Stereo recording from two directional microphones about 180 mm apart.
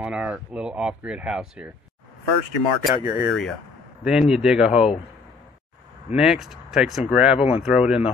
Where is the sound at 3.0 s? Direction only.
35° left (ahead or behind).